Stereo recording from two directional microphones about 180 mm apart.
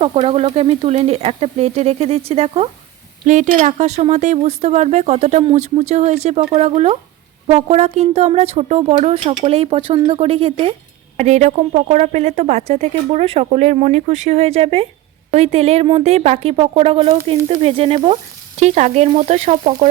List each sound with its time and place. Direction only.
0.0 s speech: 30° right (ahead or behind)